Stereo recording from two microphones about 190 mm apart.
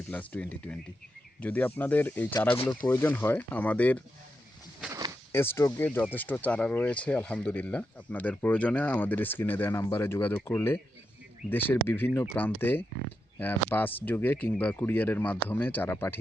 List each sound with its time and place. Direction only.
0.1 s speech: 5° left (ahead or behind)
5.3 s speech: 10° left (ahead or behind)